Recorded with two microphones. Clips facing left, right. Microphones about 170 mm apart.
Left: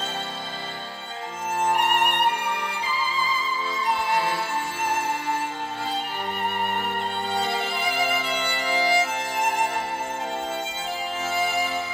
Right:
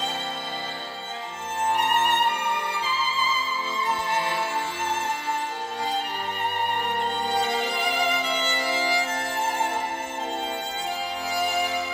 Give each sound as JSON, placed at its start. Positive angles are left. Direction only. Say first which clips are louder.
{"t": 1.7, "sound": "violin", "louder": "even", "side_deg": 10}
{"t": 7.7, "sound": "music", "louder": "even", "side_deg": 5}